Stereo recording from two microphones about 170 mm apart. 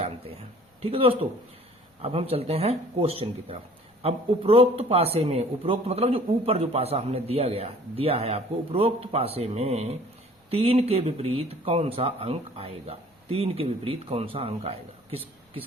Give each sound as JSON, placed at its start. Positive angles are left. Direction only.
{"t": 0.8, "sound": "a man's voice", "side_deg": -35}